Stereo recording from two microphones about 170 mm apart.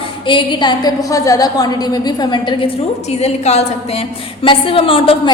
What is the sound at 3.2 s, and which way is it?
A woman's voice, 40° left (ahead or behind).